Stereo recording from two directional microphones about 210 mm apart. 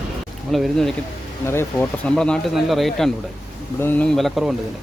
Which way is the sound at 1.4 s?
10° left (ahead or behind).